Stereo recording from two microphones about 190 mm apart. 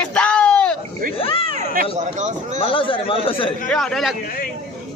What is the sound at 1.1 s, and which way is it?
Speech, 30° left (ahead or behind).